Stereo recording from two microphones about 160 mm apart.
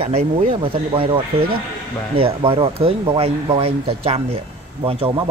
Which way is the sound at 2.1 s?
35° right (ahead or behind).